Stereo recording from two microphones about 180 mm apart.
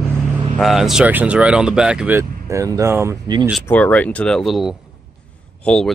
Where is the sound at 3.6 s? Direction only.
10° left (ahead or behind).